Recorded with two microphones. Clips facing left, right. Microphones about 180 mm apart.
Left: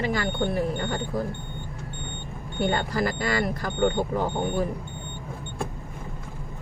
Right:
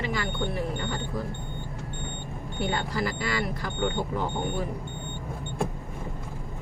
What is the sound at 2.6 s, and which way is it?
Speech, 50° left (ahead or behind).